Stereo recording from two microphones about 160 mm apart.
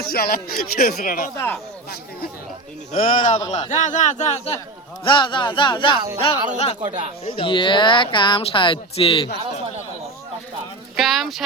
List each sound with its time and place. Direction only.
0.0 s speech: 70° left (ahead or behind)
2.9 s a man's voice: 55° left (ahead or behind); by 4.6 s 40° left (ahead or behind)
5.0 s speech: 30° left (ahead or behind)
10.9 s speech: centre (ahead or behind)